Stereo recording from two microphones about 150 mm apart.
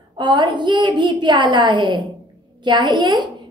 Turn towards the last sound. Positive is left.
turn(degrees=-30)  # may be behind; listen again after turning